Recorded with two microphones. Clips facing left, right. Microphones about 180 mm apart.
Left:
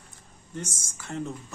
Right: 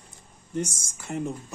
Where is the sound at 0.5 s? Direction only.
15° right (ahead or behind).